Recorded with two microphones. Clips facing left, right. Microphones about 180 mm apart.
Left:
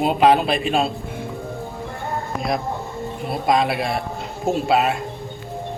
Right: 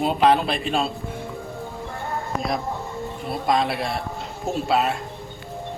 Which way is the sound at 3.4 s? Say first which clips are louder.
Left 3 dB; 10° left (ahead or behind).